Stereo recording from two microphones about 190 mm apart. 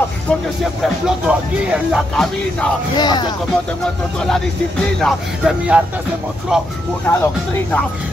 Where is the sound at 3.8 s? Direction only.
5° left (ahead or behind).